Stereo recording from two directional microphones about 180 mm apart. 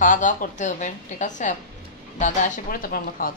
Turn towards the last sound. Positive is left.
turn(degrees=55)  # may be behind; listen again after turning